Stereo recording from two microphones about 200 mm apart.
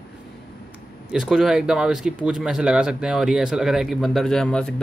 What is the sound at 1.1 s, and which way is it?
Speech, centre (ahead or behind).